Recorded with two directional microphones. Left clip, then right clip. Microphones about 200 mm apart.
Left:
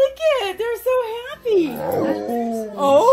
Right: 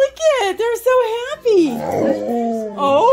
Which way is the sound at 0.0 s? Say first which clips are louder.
Right 3 dB; 55° right (ahead or behind).